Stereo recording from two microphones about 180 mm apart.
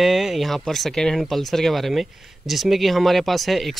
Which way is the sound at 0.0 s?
Centre (ahead or behind).